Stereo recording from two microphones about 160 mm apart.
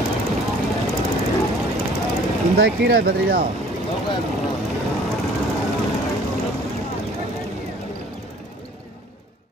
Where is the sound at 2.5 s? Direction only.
75° right (ahead or behind).